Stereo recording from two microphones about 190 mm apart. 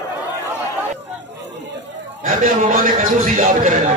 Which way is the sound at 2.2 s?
45° right (ahead or behind).